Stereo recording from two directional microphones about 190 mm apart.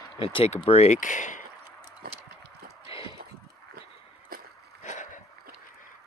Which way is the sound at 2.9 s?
25° left (ahead or behind).